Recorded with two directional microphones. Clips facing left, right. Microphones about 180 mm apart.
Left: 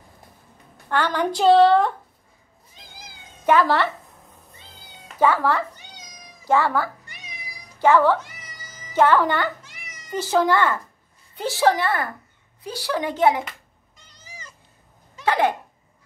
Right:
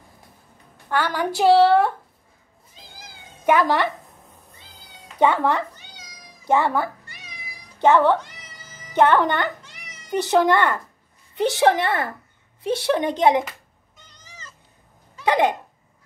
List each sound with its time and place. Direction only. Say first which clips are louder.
0.8 s a woman's voice: left 1 dB; 10° right (ahead or behind)
3.4 s a woman's voice: even; 15° right (ahead or behind)
5.2 s a child's voice: right 1 dB; 20° right (ahead or behind)
8.2 s cat: even; 10° left (ahead or behind)
8.9 s a child's voice: right 1 dB; 20° right (ahead or behind)
9.6 s cat: even; 10° left (ahead or behind)
10.3 s a child's voice: right 1 dB; 20° right (ahead or behind)
13.4 s cat: right 4 dB; 5° right (ahead or behind)
14.2 s cat: left 2 dB; 10° left (ahead or behind)
15.2 s a child's voice: right 1 dB; 20° right (ahead or behind)